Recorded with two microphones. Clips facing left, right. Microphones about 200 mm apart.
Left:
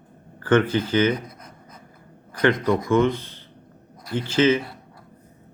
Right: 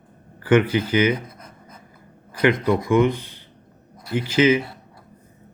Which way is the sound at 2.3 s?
10° right (ahead or behind).